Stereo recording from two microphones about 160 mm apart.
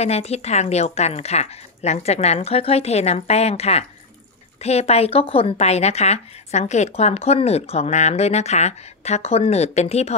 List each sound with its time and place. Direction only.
0.0 s a woman's voice: 40° left (ahead or behind)